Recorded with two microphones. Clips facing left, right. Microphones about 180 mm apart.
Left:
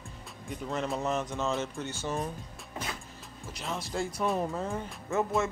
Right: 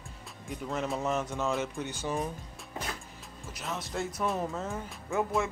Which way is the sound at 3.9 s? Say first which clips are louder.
Left 2 dB; centre (ahead or behind).